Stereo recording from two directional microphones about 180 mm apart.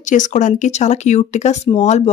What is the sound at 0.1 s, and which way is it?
Speech, 45° left (ahead or behind).